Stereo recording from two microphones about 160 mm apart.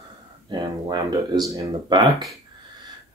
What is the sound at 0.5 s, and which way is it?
Speech, 25° right (ahead or behind).